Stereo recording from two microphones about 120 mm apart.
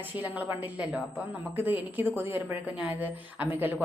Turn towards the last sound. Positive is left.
turn(degrees=-15)  # may be behind; listen again after turning